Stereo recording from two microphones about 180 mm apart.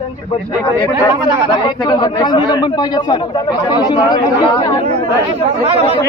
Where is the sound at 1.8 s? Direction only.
25° left (ahead or behind).